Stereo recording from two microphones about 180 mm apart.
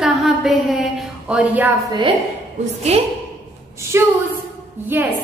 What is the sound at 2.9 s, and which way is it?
Speech, 35° right (ahead or behind).